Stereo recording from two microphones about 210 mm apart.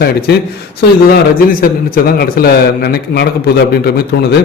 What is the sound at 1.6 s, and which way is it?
A man's voice, 45° left (ahead or behind).